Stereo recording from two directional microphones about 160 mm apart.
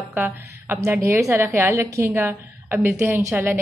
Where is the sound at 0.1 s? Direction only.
15° right (ahead or behind).